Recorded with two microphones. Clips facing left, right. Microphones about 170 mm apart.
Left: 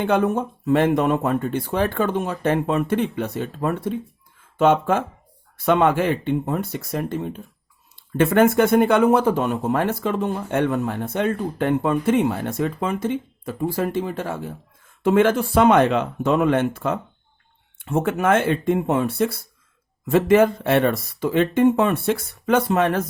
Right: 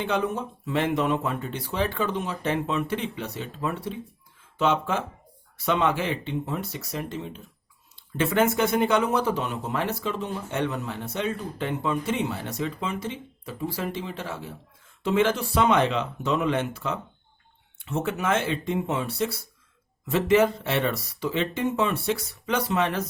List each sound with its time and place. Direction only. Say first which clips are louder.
0.0 s speech: left 7 dB; 50° left (ahead or behind)